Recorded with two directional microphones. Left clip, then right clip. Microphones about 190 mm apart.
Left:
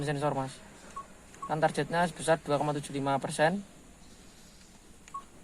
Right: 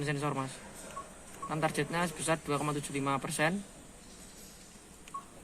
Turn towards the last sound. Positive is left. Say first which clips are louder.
# left 4 dB
turn(degrees=55)  # may be behind; listen again after turning